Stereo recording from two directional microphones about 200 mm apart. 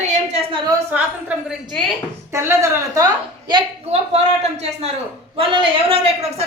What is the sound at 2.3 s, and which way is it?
A woman's voice, 15° right (ahead or behind).